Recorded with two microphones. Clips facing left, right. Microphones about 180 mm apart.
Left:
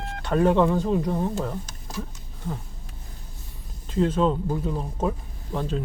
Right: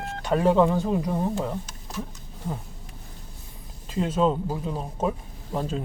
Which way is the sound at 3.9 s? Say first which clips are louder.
Left 1 dB; 10° right (ahead or behind).